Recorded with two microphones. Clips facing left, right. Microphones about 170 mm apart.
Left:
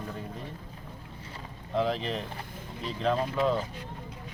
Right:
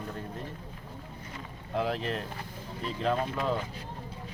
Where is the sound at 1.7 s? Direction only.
5° right (ahead or behind).